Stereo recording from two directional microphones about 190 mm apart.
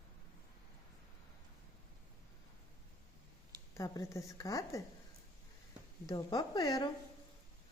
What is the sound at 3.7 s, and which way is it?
Speech, 15° left (ahead or behind).